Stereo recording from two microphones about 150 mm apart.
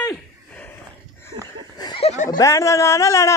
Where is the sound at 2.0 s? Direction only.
50° left (ahead or behind).